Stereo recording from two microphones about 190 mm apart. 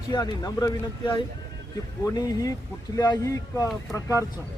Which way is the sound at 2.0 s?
20° left (ahead or behind).